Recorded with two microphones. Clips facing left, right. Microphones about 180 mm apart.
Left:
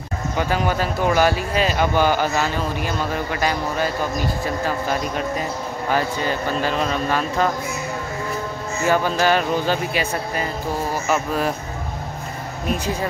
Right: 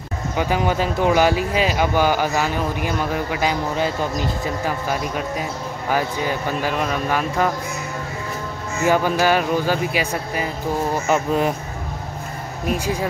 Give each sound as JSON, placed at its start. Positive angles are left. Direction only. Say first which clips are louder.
{"t": 0.4, "sound": "speech", "louder": "right 1 dB", "side_deg": -15}
{"t": 8.8, "sound": "speech", "louder": "right 1 dB", "side_deg": -10}